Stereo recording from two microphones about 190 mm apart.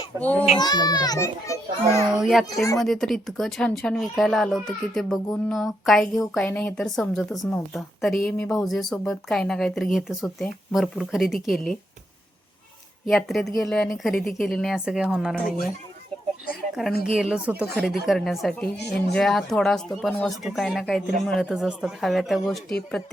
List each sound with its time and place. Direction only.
0.2 s a child's voice: 10° left (ahead or behind)
0.6 s a child's voice: 20° left (ahead or behind)
2.1 s speech: centre (ahead or behind)
13.1 s speech: centre (ahead or behind)
17.0 s speech: 5° right (ahead or behind)